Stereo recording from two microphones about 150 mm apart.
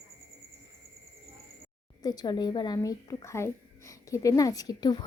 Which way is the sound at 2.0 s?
25° left (ahead or behind).